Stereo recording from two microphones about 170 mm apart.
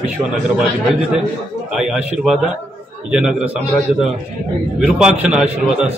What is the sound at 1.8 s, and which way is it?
A man's voice, 5° right (ahead or behind).